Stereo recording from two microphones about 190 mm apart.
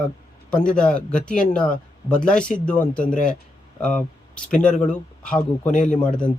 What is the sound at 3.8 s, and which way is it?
A man's voice, 5° left (ahead or behind).